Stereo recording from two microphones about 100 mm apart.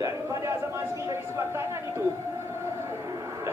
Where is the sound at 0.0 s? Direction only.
35° right (ahead or behind).